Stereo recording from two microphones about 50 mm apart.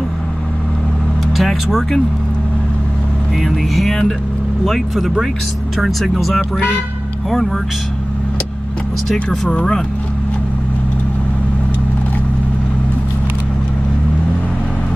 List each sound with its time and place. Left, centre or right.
1.3 s speech: centre
3.3 s speech: centre
9.1 s speech: centre
9.5 s speech: centre